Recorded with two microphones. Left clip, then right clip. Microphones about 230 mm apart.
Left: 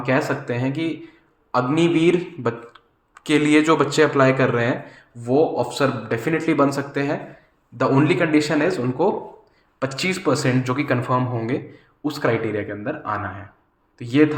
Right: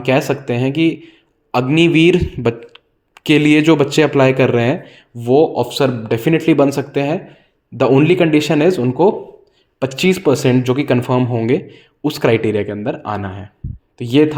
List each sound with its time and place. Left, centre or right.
0.0 s speech: right